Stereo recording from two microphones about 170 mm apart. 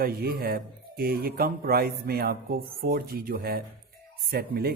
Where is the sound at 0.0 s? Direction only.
65° right (ahead or behind).